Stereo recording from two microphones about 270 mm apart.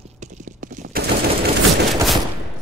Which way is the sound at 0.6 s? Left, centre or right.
Right.